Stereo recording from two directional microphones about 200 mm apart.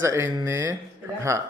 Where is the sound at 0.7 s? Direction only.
15° right (ahead or behind).